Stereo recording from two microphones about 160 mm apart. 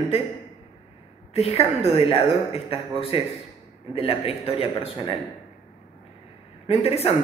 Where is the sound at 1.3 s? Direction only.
40° left (ahead or behind).